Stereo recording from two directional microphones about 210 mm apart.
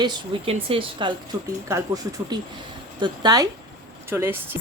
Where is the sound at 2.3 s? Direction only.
20° right (ahead or behind).